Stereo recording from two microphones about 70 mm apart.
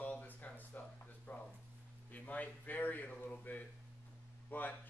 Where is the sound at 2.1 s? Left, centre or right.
Left.